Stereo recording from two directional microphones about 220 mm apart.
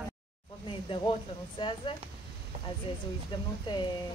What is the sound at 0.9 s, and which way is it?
A woman's voice, 20° left (ahead or behind).